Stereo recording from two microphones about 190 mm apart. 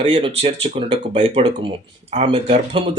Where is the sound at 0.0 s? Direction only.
25° right (ahead or behind).